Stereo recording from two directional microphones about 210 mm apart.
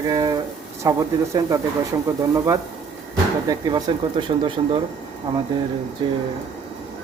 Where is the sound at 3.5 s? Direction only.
20° right (ahead or behind).